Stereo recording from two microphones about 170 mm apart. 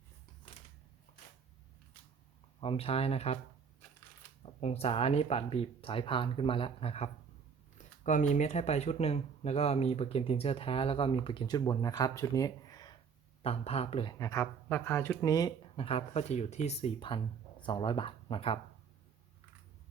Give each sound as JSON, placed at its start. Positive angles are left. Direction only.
{"t": 2.6, "sound": "speech", "side_deg": 35}
{"t": 4.6, "sound": "speech", "side_deg": 35}
{"t": 8.3, "sound": "speech", "side_deg": 40}
{"t": 13.4, "sound": "speech", "side_deg": 35}